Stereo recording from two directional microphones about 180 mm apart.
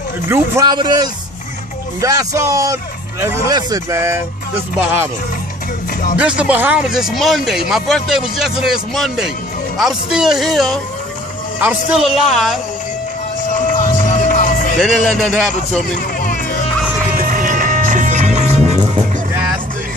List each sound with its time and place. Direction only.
0.3 s a man's voice: 20° right (ahead or behind)
6.1 s speech: 5° right (ahead or behind)
13.5 s music: 45° left (ahead or behind)
14.8 s speech: 5° left (ahead or behind)
17.2 s music: 50° right (ahead or behind)